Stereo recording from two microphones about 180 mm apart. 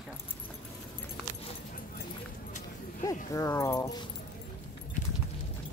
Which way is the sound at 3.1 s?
15° left (ahead or behind).